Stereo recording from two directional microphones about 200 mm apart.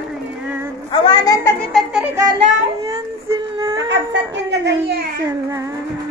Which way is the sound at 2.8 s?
15° right (ahead or behind).